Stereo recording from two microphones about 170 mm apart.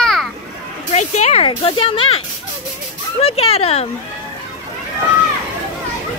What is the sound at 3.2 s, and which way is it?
Speech, 35° left (ahead or behind).